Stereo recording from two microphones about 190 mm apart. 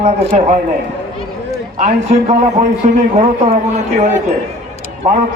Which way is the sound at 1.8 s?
35° right (ahead or behind).